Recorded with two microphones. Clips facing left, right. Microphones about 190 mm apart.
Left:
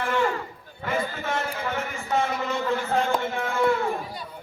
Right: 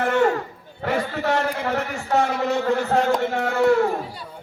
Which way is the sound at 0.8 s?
70° right (ahead or behind).